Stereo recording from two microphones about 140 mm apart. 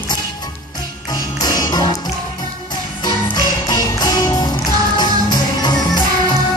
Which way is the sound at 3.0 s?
30° left (ahead or behind).